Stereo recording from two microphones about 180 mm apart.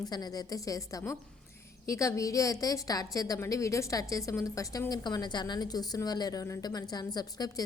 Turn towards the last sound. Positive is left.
turn(degrees=20)  # may be behind; listen again after turning